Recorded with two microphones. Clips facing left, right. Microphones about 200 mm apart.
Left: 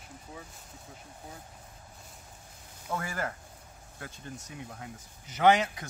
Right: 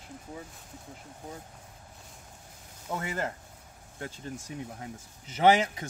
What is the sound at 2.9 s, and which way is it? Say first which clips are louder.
Speech: right 1 dB; 20° right (ahead or behind).